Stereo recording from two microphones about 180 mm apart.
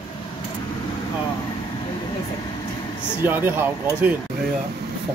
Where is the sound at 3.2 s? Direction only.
10° right (ahead or behind).